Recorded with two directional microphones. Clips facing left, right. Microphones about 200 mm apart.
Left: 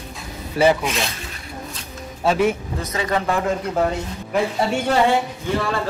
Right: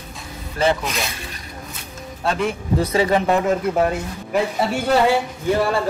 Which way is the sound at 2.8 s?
30° right (ahead or behind).